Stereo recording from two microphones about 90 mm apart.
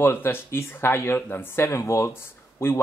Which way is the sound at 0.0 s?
25° left (ahead or behind).